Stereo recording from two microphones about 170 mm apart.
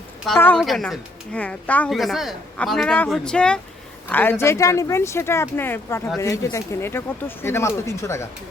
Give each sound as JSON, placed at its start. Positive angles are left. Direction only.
{"t": 0.3, "sound": "speech", "side_deg": 10}
{"t": 0.6, "sound": "speech", "side_deg": 0}